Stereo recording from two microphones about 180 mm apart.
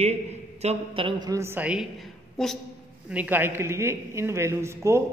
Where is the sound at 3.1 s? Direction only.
10° right (ahead or behind).